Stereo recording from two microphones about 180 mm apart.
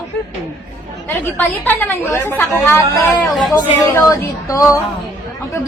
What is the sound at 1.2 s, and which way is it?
A woman's voice, 10° left (ahead or behind).